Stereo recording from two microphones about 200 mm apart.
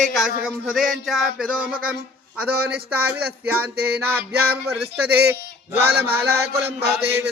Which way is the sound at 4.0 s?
10° right (ahead or behind).